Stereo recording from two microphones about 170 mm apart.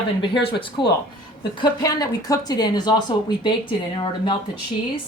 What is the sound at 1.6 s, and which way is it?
Speech, 20° left (ahead or behind).